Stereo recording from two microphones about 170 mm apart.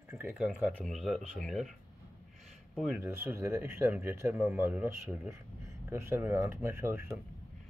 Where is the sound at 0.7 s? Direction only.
Centre (ahead or behind).